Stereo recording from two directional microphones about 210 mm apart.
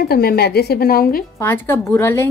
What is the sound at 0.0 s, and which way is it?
A woman's voice, 45° left (ahead or behind).